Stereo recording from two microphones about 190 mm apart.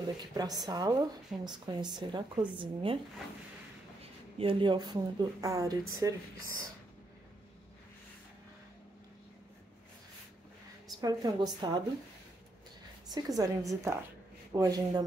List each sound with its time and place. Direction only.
0.3 s a woman's voice: 20° right (ahead or behind)
4.4 s a woman's voice: 25° right (ahead or behind)
11.0 s a woman's voice: 20° right (ahead or behind)
13.1 s a woman's voice: 20° right (ahead or behind)